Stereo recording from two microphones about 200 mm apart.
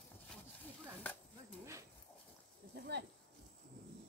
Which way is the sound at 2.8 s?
55° right (ahead or behind).